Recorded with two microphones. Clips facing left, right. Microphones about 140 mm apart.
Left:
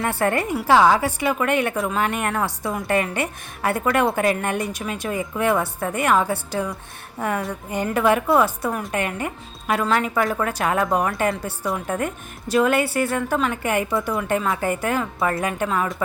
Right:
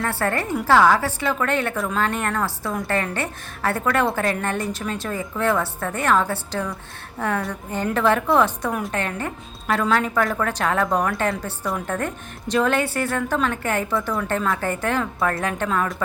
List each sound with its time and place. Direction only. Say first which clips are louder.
0.0 s a woman's voice: left 2 dB; 15° left (ahead or behind)